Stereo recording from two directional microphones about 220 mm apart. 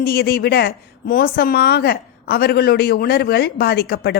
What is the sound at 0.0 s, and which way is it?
A woman's voice, 45° left (ahead or behind).